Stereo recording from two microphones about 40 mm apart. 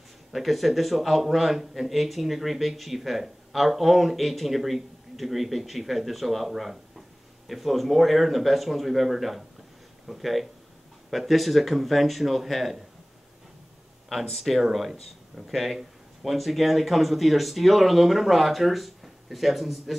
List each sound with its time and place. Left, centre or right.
0.3 s a man's voice: centre
14.0 s a man's voice: centre